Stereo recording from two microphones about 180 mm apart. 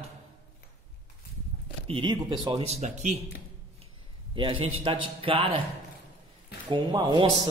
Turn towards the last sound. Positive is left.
turn(degrees=-25)  # may be behind; listen again after turning